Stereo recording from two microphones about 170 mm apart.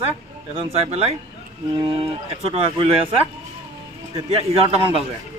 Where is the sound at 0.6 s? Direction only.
35° right (ahead or behind).